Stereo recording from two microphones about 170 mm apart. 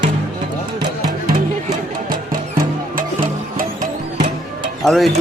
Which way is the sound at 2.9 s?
55° right (ahead or behind).